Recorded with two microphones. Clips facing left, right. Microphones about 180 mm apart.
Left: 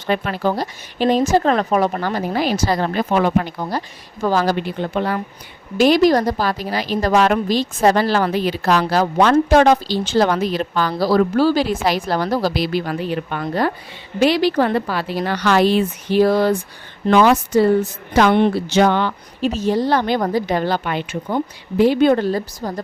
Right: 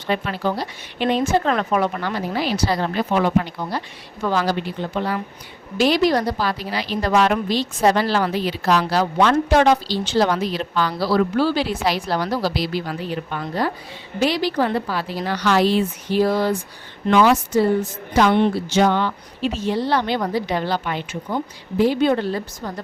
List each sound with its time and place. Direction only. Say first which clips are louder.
0.1 s a woman's voice: left 3 dB; 50° left (ahead or behind); by 16.6 s 65° left (ahead or behind)
17.1 s a woman's voice: left 2 dB; 45° left (ahead or behind)
18.1 s speech: left 2 dB; 60° left (ahead or behind)
19.4 s a woman's voice: left 4 dB; 40° left (ahead or behind); by 22.1 s 70° left (ahead or behind)
22.1 s speech: left 4 dB; 40° left (ahead or behind)